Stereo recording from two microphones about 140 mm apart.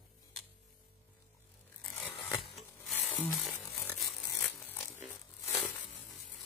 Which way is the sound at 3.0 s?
15° left (ahead or behind).